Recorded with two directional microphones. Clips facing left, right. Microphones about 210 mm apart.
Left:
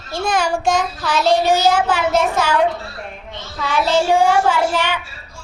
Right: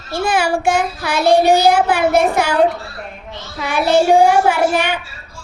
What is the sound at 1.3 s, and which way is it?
Child singing, 60° right (ahead or behind).